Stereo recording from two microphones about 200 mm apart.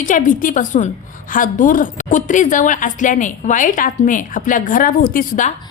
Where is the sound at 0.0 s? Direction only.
40° left (ahead or behind).